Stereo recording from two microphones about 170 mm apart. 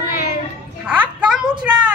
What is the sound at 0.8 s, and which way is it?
Speech, 10° right (ahead or behind).